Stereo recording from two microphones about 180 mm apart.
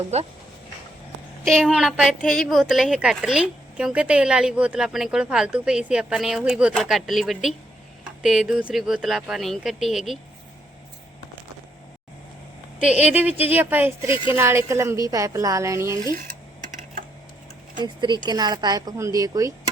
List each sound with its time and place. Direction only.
0.1 s speech: 35° right (ahead or behind)
1.5 s a woman's voice: centre (ahead or behind)
12.8 s a woman's voice: 5° right (ahead or behind)
17.7 s speech: 25° right (ahead or behind)